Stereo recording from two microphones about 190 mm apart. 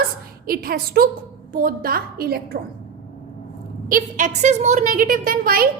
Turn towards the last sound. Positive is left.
turn(degrees=-50)  # may be behind; listen again after turning